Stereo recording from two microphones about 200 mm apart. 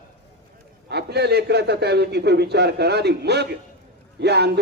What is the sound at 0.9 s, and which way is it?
A man's voice, 55° right (ahead or behind).